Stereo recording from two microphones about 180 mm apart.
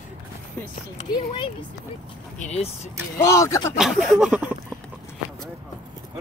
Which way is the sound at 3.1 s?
15° left (ahead or behind).